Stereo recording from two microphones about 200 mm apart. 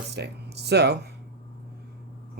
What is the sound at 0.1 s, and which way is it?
Speech, 55° right (ahead or behind).